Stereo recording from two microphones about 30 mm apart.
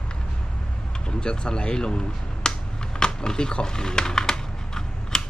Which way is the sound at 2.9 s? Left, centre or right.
Left.